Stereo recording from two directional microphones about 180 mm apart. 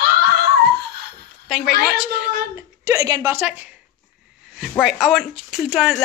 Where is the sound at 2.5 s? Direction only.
15° right (ahead or behind).